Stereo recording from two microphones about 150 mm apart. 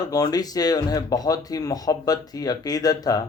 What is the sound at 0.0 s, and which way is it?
Speech, 25° left (ahead or behind).